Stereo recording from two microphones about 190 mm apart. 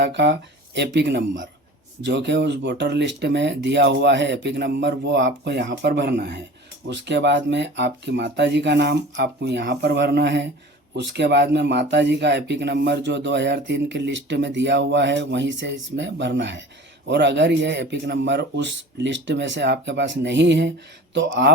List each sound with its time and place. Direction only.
0.0 s speech: 65° right (ahead or behind)